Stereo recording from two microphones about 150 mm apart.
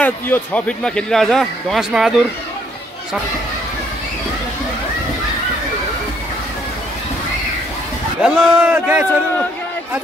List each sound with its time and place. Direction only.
0.0 s speech: 10° left (ahead or behind)
8.2 s a man's voice: 5° right (ahead or behind)